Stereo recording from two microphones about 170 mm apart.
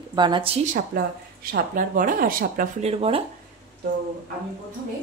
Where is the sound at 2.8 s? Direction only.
35° right (ahead or behind).